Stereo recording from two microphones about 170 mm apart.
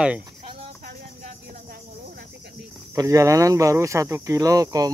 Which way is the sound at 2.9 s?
20° right (ahead or behind).